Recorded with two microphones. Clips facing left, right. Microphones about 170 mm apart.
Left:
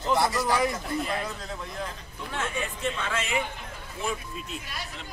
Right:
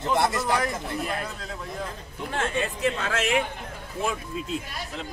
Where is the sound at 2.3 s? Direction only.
65° right (ahead or behind).